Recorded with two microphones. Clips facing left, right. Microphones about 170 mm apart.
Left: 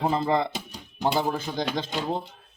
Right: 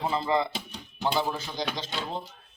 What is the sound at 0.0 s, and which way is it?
Speech, 50° left (ahead or behind).